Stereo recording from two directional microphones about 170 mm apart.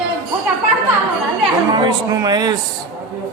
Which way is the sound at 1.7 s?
25° right (ahead or behind).